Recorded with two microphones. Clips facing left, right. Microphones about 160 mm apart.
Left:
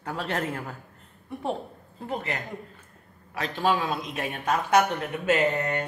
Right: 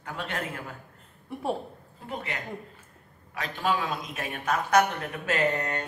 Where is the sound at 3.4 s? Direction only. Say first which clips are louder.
Left 3 dB; 35° left (ahead or behind).